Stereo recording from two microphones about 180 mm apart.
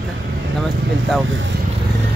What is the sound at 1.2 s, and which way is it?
Speech, 90° right.